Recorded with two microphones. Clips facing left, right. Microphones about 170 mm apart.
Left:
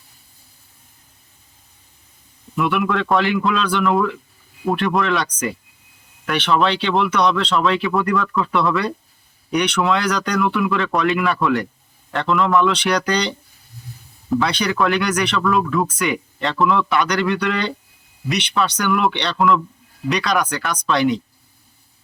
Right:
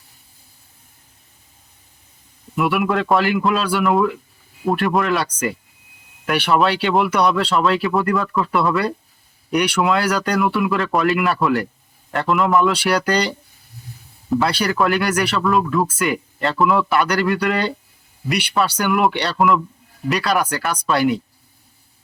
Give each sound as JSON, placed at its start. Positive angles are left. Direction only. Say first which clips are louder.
{"t": 2.6, "sound": "speech", "louder": "right 1 dB", "side_deg": -5}
{"t": 6.3, "sound": "speech", "louder": "right 1 dB", "side_deg": -10}